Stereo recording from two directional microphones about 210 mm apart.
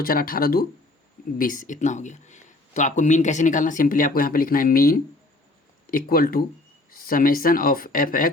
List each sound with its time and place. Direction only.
0.0 s speech: 45° left (ahead or behind)